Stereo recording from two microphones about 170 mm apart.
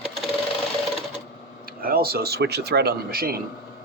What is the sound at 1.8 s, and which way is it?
Speech, 60° right (ahead or behind).